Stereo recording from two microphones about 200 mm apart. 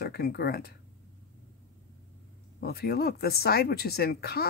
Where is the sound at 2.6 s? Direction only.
50° left (ahead or behind).